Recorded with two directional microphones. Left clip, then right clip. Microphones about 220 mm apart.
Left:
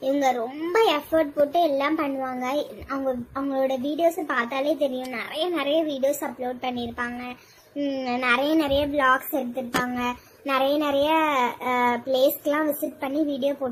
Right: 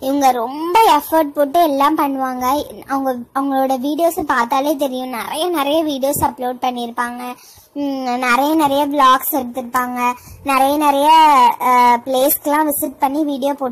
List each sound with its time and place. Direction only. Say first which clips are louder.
0.0 s speech: right 8 dB; 25° right (ahead or behind)